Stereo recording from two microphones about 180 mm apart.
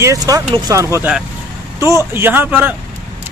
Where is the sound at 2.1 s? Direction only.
10° right (ahead or behind).